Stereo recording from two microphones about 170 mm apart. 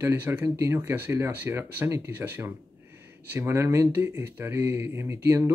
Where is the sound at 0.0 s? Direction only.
15° right (ahead or behind).